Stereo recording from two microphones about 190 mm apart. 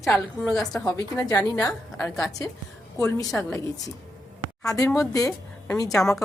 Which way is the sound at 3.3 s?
10° left (ahead or behind).